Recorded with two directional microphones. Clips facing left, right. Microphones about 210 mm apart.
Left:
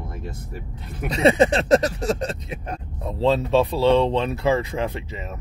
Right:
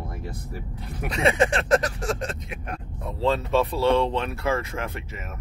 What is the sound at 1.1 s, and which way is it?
Speech, 35° left (ahead or behind).